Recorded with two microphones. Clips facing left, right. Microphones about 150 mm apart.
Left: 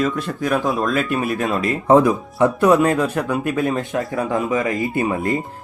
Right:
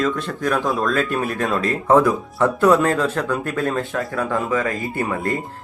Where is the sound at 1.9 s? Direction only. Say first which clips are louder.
Left 2 dB; 20° left (ahead or behind).